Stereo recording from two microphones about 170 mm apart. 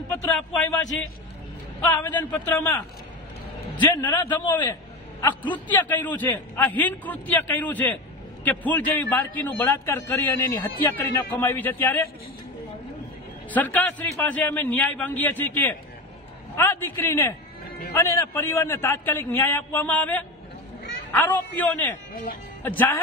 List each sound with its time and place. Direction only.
0.1 s a man's voice: 15° left (ahead or behind)
1.8 s a man's voice: 10° left (ahead or behind)
4.0 s a man's voice: 25° left (ahead or behind)
5.2 s a man's voice: 10° left (ahead or behind)
13.5 s a man's voice: 10° left (ahead or behind)